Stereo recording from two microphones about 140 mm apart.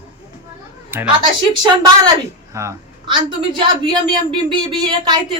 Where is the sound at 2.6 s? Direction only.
20° right (ahead or behind).